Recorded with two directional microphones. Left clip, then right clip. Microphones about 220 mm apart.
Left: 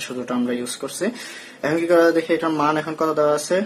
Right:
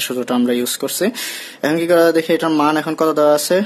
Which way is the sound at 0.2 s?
50° right (ahead or behind).